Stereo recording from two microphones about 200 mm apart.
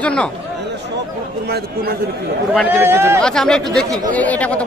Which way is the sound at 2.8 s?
10° right (ahead or behind).